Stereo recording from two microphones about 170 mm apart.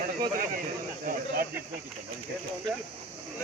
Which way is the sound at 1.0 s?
60° right (ahead or behind).